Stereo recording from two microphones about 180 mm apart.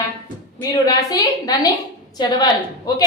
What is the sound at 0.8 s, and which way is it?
A woman's voice, 20° left (ahead or behind).